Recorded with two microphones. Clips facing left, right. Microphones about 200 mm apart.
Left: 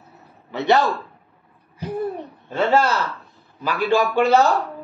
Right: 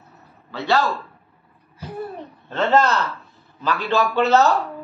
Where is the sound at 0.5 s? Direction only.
20° left (ahead or behind).